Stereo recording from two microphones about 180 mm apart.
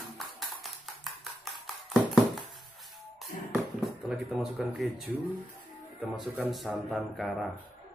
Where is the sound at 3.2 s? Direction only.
Centre (ahead or behind).